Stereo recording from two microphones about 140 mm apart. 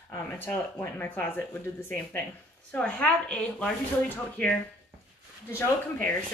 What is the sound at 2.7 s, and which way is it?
Speech, 10° left (ahead or behind).